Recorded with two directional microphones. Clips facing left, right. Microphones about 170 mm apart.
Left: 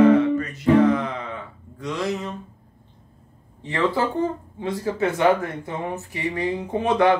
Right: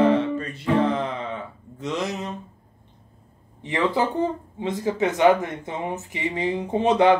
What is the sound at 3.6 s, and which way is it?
Speech, 15° right (ahead or behind).